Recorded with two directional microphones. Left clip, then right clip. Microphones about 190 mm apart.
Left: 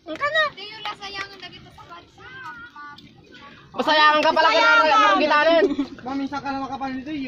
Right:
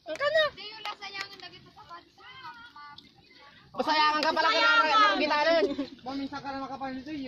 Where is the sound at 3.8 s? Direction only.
40° left (ahead or behind).